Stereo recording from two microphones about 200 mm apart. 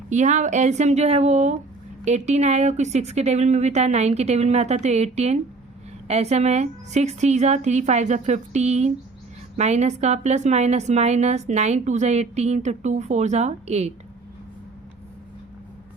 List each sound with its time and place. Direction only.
0.1 s a woman's voice: 35° right (ahead or behind)